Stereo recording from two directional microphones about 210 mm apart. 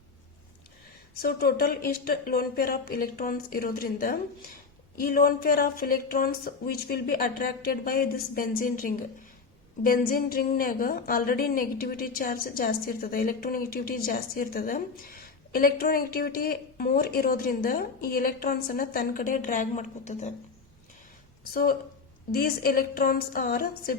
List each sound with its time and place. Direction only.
1.2 s a woman's voice: 45° left (ahead or behind)
21.5 s a woman's voice: 45° left (ahead or behind)